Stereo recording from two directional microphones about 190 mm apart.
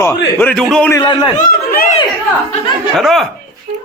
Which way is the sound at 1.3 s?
50° left (ahead or behind).